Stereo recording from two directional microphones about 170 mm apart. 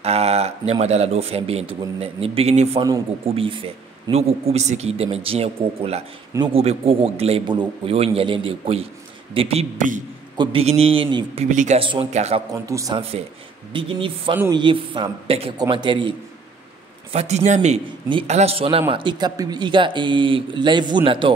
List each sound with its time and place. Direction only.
0.0 s a man's voice: 35° right (ahead or behind)
11.4 s speech: 45° right (ahead or behind)
11.8 s a man's voice: 35° right (ahead or behind)
12.6 s speech: 20° right (ahead or behind)
13.7 s a man's voice: 30° right (ahead or behind)